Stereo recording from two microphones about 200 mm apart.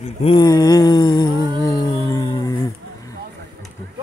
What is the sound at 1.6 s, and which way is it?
Howl, 15° left (ahead or behind).